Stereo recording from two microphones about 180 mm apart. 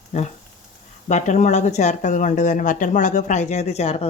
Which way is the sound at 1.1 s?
40° left (ahead or behind).